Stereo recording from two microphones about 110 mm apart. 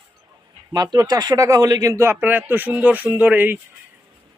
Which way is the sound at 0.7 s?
40° right (ahead or behind).